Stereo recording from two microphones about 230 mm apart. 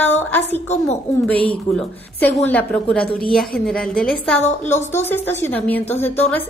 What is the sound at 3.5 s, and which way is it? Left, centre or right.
Speech, left.